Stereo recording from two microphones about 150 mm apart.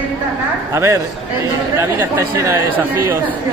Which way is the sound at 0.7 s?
20° right (ahead or behind).